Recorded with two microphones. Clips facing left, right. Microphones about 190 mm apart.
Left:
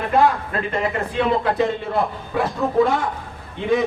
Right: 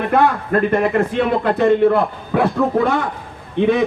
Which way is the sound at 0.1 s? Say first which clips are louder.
Right 2 dB; 55° right (ahead or behind).